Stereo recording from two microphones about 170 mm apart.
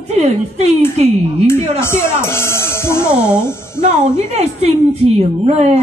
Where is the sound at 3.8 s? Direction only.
40° right (ahead or behind).